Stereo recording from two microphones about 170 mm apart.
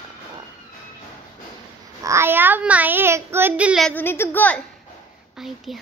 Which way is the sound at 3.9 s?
10° left (ahead or behind).